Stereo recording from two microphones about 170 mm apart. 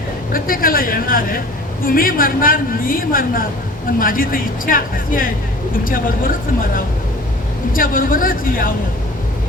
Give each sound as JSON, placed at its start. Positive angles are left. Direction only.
{"t": 0.3, "sound": "a man's voice", "side_deg": 55}